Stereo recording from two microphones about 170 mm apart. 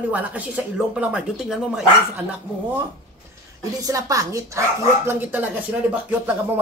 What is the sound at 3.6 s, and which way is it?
Speech, 20° right (ahead or behind).